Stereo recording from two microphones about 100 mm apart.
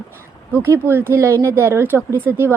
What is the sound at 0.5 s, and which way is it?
A woman's voice, 20° right (ahead or behind).